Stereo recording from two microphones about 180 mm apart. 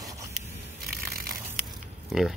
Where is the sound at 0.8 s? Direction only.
55° right (ahead or behind).